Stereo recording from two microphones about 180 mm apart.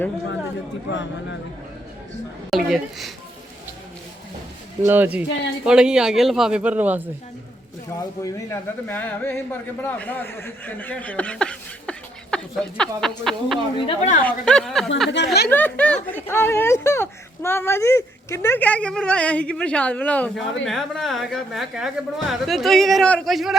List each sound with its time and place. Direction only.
0.9 s speech: 90° left
2.5 s a woman's voice: centre (ahead or behind)
4.8 s a woman's voice: 10° right (ahead or behind)
8.2 s a man's voice: 10° left (ahead or behind)
13.8 s speech: 40° left (ahead or behind)
14.3 s a woman's voice: 5° left (ahead or behind)
15.1 s speech: 70° left (ahead or behind)
15.4 s a man's voice: 10° left (ahead or behind)